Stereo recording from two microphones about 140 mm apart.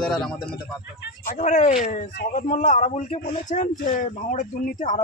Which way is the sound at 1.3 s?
60° left (ahead or behind).